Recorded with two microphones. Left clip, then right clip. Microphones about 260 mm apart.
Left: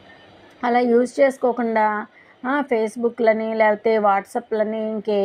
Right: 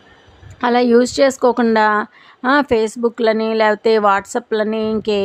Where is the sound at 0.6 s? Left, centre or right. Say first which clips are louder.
Right 4 dB; centre.